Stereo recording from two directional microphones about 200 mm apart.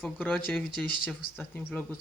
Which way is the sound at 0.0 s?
5° left (ahead or behind).